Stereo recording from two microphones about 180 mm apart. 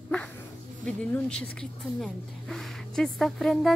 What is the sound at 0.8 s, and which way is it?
Speech, 5° left (ahead or behind).